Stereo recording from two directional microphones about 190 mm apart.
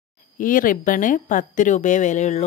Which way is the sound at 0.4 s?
45° left (ahead or behind).